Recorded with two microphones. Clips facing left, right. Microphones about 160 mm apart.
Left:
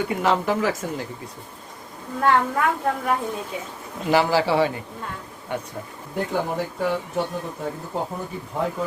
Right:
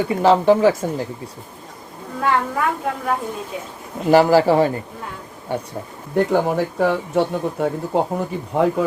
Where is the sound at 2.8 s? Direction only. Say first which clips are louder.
Even; centre (ahead or behind).